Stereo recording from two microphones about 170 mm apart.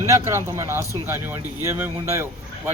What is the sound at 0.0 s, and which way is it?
A man's voice, 15° right (ahead or behind).